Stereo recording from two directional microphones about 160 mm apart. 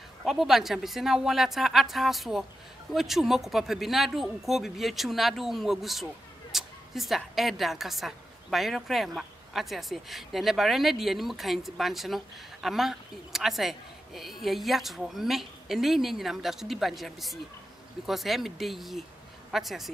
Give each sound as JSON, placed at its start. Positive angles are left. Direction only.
{"t": 0.2, "sound": "a woman's voice", "side_deg": 0}